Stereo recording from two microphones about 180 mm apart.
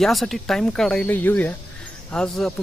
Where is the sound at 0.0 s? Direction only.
Centre (ahead or behind).